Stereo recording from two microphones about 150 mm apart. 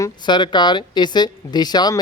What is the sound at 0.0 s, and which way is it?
A woman's voice, 30° left (ahead or behind).